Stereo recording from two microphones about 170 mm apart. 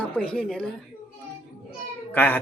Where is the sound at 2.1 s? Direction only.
10° left (ahead or behind).